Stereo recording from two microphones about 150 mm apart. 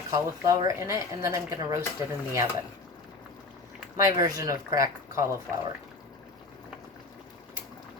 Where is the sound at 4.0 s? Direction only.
25° right (ahead or behind).